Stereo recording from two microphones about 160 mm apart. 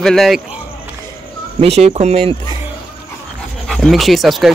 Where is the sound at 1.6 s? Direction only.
40° right (ahead or behind).